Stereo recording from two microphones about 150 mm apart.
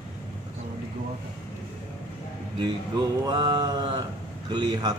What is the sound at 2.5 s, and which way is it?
A man's voice, 30° right (ahead or behind).